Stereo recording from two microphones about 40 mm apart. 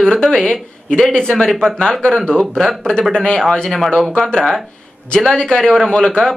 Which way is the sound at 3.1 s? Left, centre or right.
Left.